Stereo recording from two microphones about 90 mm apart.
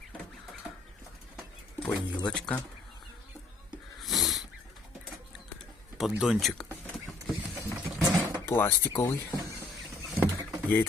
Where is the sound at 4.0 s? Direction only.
Centre (ahead or behind).